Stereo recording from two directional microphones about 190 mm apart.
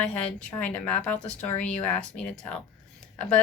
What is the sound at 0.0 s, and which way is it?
Speech, 5° left (ahead or behind).